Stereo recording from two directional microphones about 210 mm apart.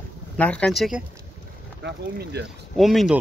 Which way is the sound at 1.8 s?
50° right (ahead or behind).